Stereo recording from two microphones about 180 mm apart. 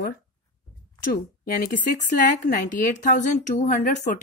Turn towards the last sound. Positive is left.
turn(degrees=45)  # may be behind; listen again after turning